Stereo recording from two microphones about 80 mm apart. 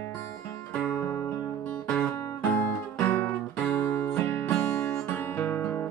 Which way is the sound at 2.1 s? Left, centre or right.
Left.